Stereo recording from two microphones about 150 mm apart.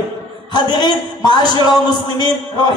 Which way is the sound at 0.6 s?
30° left (ahead or behind).